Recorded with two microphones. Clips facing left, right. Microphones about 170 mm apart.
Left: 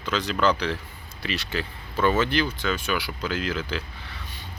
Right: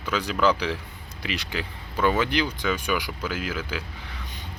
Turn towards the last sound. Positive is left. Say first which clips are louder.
# left 2 dB
turn(degrees=-10)  # may be behind; listen again after turning